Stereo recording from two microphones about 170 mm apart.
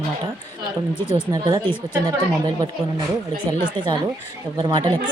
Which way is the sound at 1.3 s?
25° right (ahead or behind).